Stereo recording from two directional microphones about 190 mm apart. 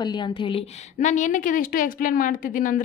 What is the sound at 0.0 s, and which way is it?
Speech, 25° left (ahead or behind).